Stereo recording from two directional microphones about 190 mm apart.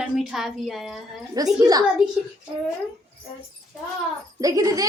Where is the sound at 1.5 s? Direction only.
20° right (ahead or behind).